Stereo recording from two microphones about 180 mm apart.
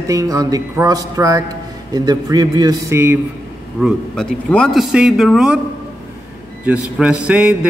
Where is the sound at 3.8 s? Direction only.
Centre (ahead or behind).